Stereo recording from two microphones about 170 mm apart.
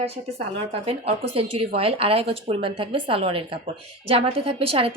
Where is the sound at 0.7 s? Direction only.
35° right (ahead or behind).